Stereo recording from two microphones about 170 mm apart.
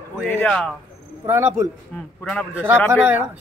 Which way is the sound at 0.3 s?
10° left (ahead or behind).